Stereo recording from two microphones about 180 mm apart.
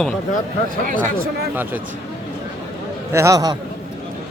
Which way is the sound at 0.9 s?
50° right (ahead or behind).